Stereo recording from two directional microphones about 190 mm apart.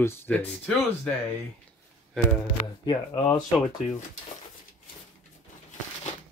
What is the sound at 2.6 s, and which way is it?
Speech, 25° left (ahead or behind).